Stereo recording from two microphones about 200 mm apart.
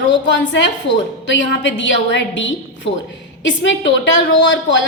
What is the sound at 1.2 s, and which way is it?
A woman's voice, 65° left (ahead or behind).